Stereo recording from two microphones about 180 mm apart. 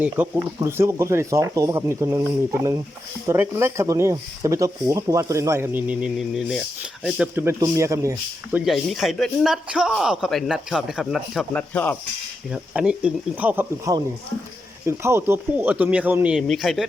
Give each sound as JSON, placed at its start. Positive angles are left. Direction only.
{"t": 0.0, "sound": "speech", "side_deg": -10}
{"t": 7.2, "sound": "speech", "side_deg": -10}
{"t": 8.5, "sound": "a man's voice", "side_deg": 0}
{"t": 12.5, "sound": "speech", "side_deg": -5}